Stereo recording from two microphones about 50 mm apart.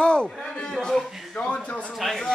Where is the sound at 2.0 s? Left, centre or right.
Centre.